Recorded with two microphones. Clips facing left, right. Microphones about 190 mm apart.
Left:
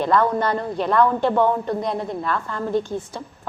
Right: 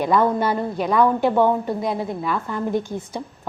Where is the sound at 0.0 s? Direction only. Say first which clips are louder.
Right 1 dB; 10° right (ahead or behind).